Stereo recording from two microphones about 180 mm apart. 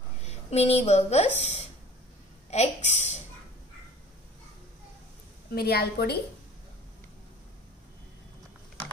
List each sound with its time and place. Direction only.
0.2 s a woman's voice: 35° left (ahead or behind)
5.5 s a woman's voice: 60° left (ahead or behind)